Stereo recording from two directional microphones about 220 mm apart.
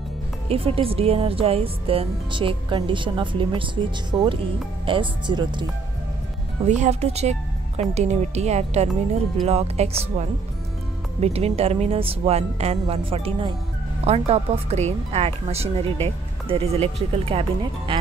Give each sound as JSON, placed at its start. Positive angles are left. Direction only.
{"t": 0.5, "sound": "speech", "side_deg": -25}
{"t": 6.6, "sound": "speech", "side_deg": -30}